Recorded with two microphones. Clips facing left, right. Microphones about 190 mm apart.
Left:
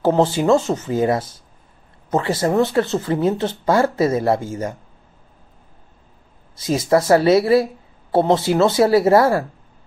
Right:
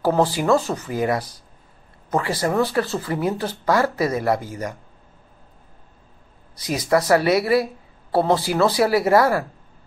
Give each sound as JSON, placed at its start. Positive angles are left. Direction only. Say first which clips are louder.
{"t": 0.0, "sound": "speech", "louder": "left 3 dB", "side_deg": 25}
{"t": 6.5, "sound": "speech", "louder": "left 3 dB", "side_deg": 25}